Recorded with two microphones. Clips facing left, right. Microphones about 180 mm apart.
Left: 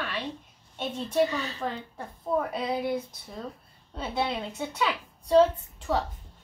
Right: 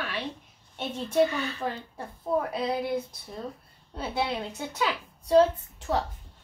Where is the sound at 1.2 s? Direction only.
35° left (ahead or behind).